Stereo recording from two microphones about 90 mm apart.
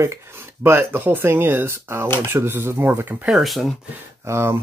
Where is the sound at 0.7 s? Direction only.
25° right (ahead or behind).